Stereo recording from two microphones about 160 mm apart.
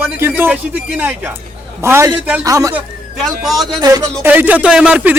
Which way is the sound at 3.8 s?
25° right (ahead or behind).